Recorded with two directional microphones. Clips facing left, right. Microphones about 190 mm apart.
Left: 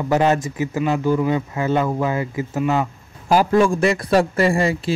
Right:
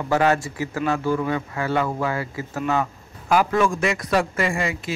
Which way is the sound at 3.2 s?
30° left (ahead or behind).